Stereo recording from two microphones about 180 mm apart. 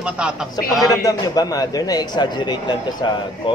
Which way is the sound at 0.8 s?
20° left (ahead or behind).